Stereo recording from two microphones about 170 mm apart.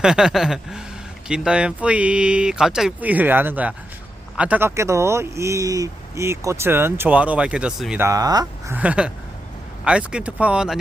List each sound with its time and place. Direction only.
0.0 s speech: 5° right (ahead or behind)
8.0 s speech: 20° right (ahead or behind)
8.7 s speech: 10° right (ahead or behind)